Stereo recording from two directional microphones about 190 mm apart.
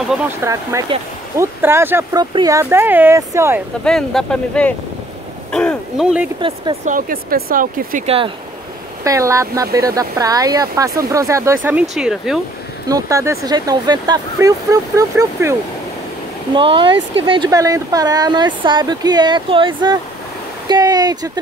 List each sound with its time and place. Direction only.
0.4 s speech: 15° right (ahead or behind)
3.8 s speech: centre (ahead or behind)
6.4 s speech: 25° right (ahead or behind)
6.8 s speech: 45° right (ahead or behind)
9.0 s speech: 15° right (ahead or behind)
11.9 s speech: centre (ahead or behind)
12.8 s speech: 15° right (ahead or behind)
16.5 s speech: 25° right (ahead or behind)